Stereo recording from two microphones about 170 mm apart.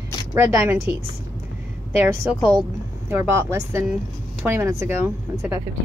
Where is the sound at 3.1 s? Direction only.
15° right (ahead or behind).